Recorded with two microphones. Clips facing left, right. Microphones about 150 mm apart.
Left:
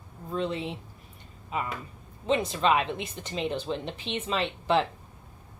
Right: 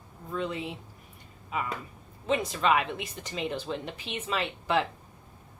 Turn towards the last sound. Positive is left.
turn(degrees=25)  # may be behind; listen again after turning